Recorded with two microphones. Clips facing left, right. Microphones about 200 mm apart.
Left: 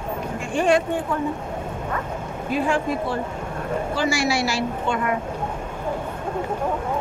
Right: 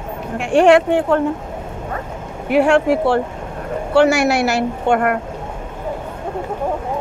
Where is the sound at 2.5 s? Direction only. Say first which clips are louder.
Right 9 dB; 75° right (ahead or behind).